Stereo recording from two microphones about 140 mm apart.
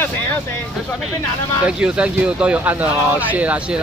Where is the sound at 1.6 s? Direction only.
5° right (ahead or behind).